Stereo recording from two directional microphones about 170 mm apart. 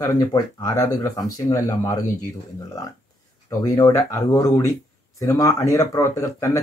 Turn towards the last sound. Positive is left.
turn(degrees=20)  # may be behind; listen again after turning